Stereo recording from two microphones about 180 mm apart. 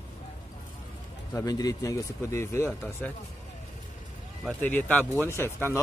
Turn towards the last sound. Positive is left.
turn(degrees=10)  # may be behind; listen again after turning